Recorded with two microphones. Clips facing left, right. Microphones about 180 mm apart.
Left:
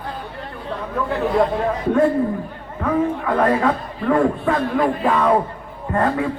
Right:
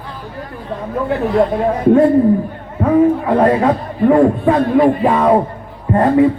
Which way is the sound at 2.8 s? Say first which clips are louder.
Right 8 dB; 30° right (ahead or behind).